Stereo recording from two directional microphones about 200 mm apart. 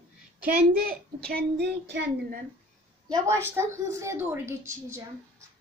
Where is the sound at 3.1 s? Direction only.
15° right (ahead or behind).